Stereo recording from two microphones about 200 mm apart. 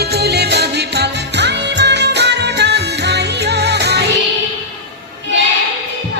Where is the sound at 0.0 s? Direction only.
55° right (ahead or behind).